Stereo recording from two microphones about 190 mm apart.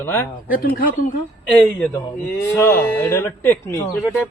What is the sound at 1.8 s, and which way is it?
Speech, 10° left (ahead or behind).